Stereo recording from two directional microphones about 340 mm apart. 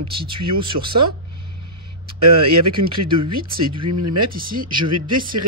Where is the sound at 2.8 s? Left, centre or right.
Right.